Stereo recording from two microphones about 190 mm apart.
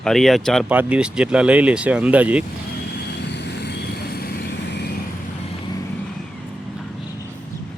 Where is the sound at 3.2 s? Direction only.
65° left (ahead or behind).